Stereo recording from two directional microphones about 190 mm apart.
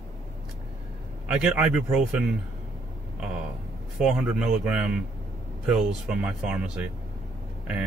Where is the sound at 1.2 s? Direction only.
5° right (ahead or behind).